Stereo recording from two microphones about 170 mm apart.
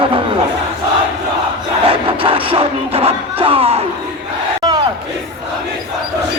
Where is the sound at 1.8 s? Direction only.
30° right (ahead or behind).